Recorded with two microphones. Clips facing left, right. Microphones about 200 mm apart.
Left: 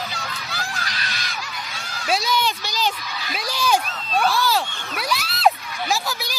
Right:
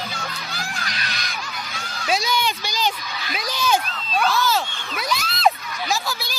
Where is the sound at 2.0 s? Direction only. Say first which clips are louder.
Even; 5° left (ahead or behind).